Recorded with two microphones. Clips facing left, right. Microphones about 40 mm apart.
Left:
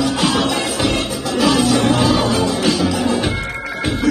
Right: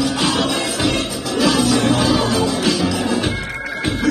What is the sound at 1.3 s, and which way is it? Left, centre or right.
Music, left.